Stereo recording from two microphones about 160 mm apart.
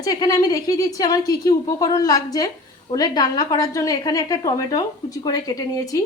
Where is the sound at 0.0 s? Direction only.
25° left (ahead or behind).